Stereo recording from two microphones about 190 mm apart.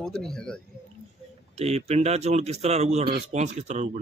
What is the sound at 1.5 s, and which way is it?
A man's voice, 35° right (ahead or behind).